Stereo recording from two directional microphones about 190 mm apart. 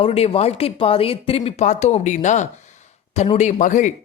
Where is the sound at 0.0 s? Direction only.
30° left (ahead or behind).